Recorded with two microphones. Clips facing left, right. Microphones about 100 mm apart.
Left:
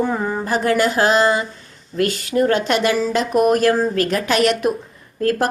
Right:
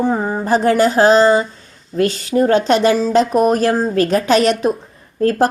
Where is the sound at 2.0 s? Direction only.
30° right (ahead or behind).